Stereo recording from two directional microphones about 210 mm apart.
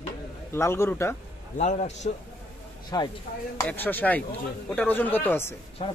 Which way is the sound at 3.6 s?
10° left (ahead or behind).